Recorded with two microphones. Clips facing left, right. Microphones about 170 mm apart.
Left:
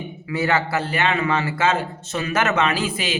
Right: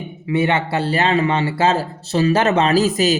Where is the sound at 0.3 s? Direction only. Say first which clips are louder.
Right 3 dB; 25° right (ahead or behind).